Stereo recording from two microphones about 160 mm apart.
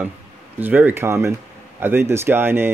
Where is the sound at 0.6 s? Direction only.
10° right (ahead or behind).